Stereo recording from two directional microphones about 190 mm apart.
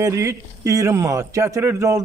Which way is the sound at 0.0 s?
15° right (ahead or behind).